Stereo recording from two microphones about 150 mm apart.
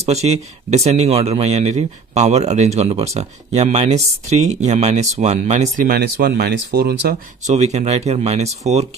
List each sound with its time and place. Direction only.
0.0 s speech: 45° right (ahead or behind)
5.9 s speech: 90° right
7.4 s speech: 50° right (ahead or behind)